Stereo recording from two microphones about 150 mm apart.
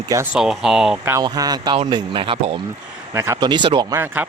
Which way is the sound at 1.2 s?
25° right (ahead or behind).